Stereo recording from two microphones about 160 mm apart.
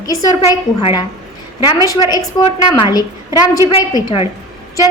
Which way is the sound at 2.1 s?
25° left (ahead or behind).